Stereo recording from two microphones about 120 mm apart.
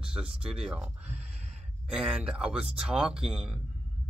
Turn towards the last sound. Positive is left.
turn(degrees=-5)  # may be behind; listen again after turning